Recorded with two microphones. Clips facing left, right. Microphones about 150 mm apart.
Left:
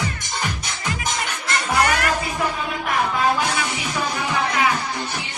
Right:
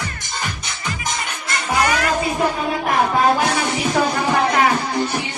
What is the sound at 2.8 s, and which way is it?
Music, 40° right (ahead or behind).